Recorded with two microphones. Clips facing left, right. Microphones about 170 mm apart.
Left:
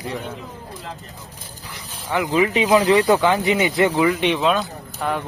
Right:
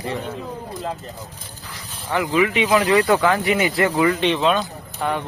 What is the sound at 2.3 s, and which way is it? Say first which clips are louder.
Speech: left 1 dB; 35° left (ahead or behind).